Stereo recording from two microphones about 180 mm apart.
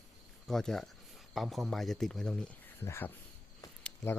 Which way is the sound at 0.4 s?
Centre (ahead or behind).